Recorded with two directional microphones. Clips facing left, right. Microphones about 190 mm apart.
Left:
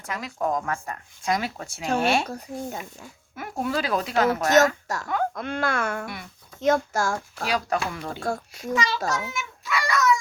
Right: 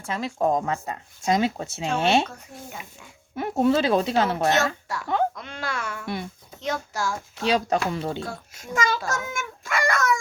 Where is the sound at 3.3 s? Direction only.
25° right (ahead or behind).